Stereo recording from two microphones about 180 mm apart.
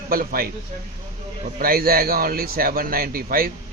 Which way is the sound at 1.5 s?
55° right (ahead or behind).